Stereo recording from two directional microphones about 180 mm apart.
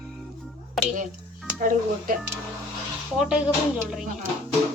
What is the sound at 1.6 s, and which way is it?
Speech, 45° right (ahead or behind).